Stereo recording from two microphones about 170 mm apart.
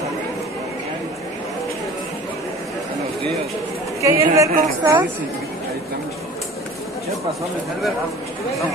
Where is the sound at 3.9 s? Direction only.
20° right (ahead or behind).